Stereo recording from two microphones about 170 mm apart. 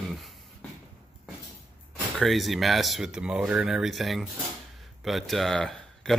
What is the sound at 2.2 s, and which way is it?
Speech, centre (ahead or behind).